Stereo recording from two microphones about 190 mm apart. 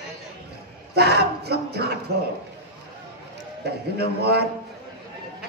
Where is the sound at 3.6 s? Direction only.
55° right (ahead or behind).